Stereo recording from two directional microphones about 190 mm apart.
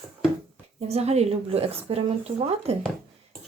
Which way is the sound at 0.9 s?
35° right (ahead or behind).